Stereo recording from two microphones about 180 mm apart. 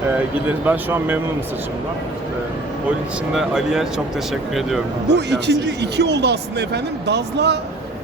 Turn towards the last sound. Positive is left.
turn(degrees=-70)  # may be behind; listen again after turning